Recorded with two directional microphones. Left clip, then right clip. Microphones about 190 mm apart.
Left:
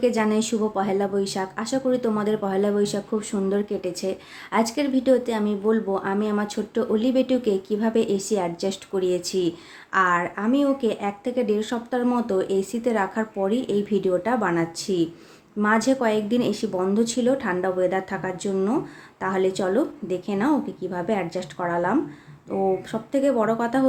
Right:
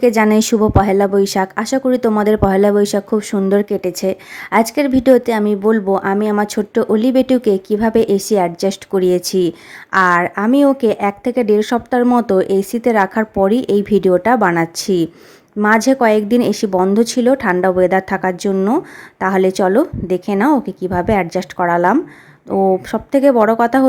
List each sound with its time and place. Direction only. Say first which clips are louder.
0.0 s a woman's voice: right 9 dB; 45° right (ahead or behind)